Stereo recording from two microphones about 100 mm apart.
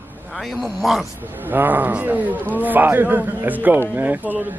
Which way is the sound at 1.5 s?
20° right (ahead or behind).